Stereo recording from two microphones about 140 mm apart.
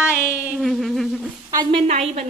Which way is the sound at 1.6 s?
45° right (ahead or behind).